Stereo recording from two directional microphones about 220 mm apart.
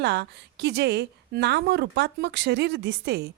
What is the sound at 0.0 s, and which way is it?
Speech, 50° right (ahead or behind).